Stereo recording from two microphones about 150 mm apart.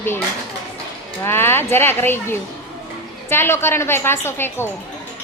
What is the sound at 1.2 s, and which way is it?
A child's voice, 15° left (ahead or behind).